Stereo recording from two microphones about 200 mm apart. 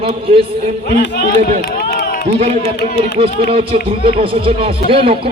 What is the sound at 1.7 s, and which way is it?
Run, 50° left (ahead or behind).